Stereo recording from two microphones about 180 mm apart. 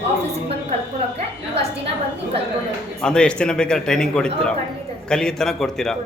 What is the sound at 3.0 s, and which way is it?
A man's voice, 5° left (ahead or behind).